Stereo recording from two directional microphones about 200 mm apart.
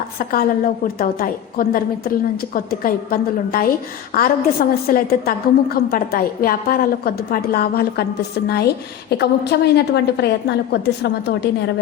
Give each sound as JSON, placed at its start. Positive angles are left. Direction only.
{"t": 0.2, "sound": "a woman's voice", "side_deg": 45}